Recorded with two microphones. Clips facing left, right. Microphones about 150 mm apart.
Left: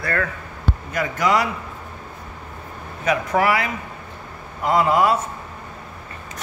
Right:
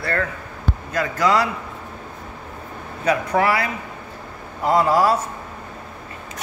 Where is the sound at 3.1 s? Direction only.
30° right (ahead or behind).